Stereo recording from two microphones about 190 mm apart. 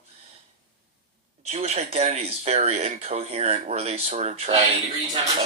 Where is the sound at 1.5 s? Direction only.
35° right (ahead or behind).